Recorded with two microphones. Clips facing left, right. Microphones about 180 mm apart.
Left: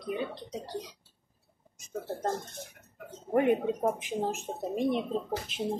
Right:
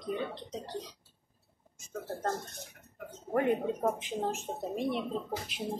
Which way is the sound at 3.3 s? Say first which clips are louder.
Left 3 dB; 15° left (ahead or behind).